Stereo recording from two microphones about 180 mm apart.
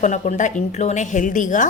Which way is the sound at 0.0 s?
40° left (ahead or behind).